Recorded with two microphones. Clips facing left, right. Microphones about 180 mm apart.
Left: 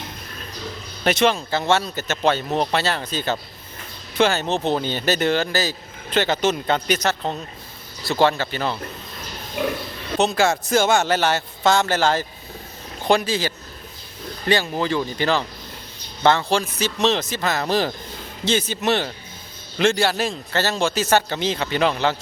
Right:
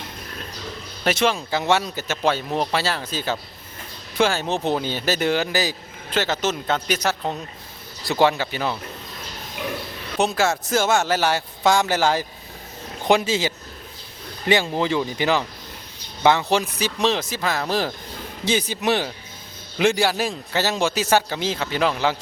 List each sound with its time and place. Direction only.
1.0 s a man's voice: 5° right (ahead or behind)
10.2 s a man's voice: 5° right (ahead or behind)
18.4 s a man's voice: 15° right (ahead or behind)